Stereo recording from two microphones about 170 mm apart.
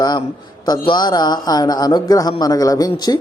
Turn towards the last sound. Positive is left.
turn(degrees=25)  # may be behind; listen again after turning